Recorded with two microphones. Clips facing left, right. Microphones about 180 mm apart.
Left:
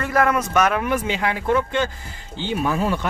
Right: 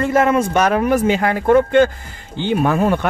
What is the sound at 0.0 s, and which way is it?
Speech, 25° right (ahead or behind).